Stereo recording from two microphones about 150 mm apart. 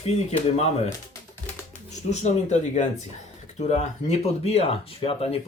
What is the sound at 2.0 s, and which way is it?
Speech, 50° left (ahead or behind).